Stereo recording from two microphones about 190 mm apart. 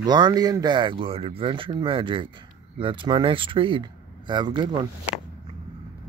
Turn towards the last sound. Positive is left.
turn(degrees=-25)  # may be behind; listen again after turning